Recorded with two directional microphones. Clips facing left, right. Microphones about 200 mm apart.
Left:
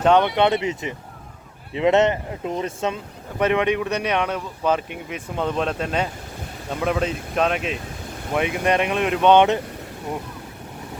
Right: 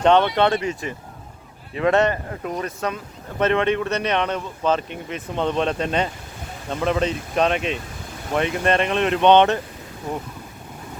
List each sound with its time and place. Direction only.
0.0 s speech: 10° left (ahead or behind)
3.3 s speech: 10° left (ahead or behind)